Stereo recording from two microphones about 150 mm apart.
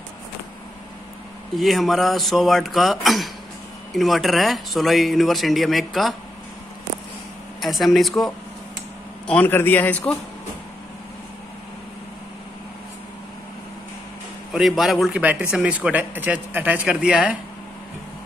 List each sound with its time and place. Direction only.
1.6 s speech: centre (ahead or behind)
7.6 s speech: centre (ahead or behind)
9.3 s a man's voice: 10° left (ahead or behind)
14.5 s speech: centre (ahead or behind)